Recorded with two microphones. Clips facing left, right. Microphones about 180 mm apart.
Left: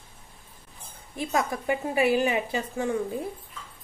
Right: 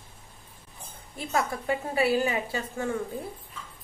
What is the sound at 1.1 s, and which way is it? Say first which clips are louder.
A woman's voice: left 2 dB; 15° left (ahead or behind).